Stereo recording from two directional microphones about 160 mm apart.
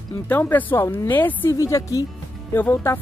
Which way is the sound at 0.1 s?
10° left (ahead or behind).